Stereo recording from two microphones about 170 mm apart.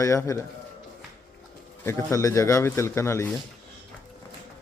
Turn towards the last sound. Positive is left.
turn(degrees=15)  # may be behind; listen again after turning